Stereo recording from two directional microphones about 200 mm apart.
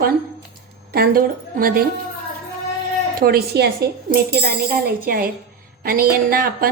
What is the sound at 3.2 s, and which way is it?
A woman's voice, 50° right (ahead or behind).